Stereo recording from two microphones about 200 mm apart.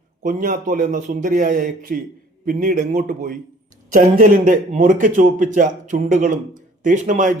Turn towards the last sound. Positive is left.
turn(degrees=-40)  # may be behind; listen again after turning